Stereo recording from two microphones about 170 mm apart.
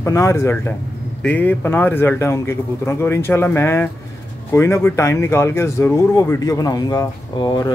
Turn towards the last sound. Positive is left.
turn(degrees=20)  # may be behind; listen again after turning